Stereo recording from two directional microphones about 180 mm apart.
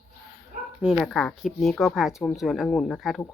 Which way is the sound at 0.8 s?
Centre (ahead or behind).